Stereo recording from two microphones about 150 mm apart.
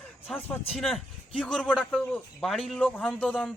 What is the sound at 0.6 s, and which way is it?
A man's voice, centre (ahead or behind).